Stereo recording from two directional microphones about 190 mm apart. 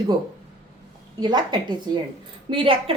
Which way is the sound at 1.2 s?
25° right (ahead or behind).